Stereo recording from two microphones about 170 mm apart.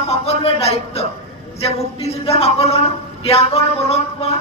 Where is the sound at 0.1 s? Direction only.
35° left (ahead or behind).